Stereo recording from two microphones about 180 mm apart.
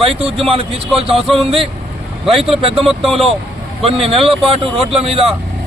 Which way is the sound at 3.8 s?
30° right (ahead or behind).